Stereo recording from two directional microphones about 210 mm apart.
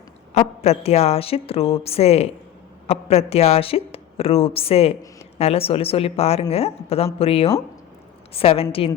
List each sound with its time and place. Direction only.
0.3 s a woman's voice: 30° left (ahead or behind)